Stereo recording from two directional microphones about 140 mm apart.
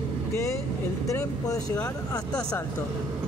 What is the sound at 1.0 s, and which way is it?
Speech, 25° left (ahead or behind).